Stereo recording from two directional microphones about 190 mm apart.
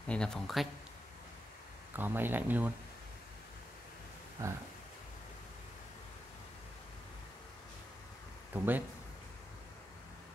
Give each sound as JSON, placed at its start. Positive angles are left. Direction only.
{"t": 0.0, "sound": "speech", "side_deg": 5}
{"t": 2.0, "sound": "speech", "side_deg": -10}
{"t": 4.4, "sound": "speech", "side_deg": -15}
{"t": 8.5, "sound": "speech", "side_deg": -10}